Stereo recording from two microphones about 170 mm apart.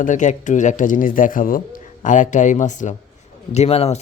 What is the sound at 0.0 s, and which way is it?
A man's voice, 45° left (ahead or behind).